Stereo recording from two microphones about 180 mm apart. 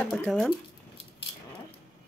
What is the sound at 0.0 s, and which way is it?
Speech, 5° left (ahead or behind).